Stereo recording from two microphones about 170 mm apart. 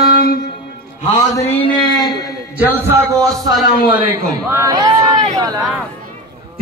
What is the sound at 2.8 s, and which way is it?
A man's voice, 15° right (ahead or behind).